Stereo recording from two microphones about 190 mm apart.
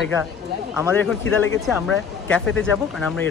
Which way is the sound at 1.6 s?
Centre (ahead or behind).